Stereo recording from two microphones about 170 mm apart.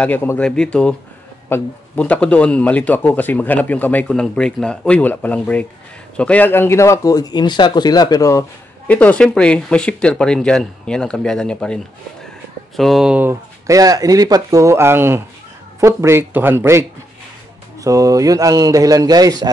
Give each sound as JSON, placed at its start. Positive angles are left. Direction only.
{"t": 0.0, "sound": "speech", "side_deg": 10}